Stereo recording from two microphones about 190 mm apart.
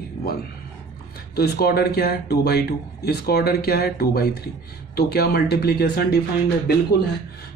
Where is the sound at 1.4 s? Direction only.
55° left (ahead or behind).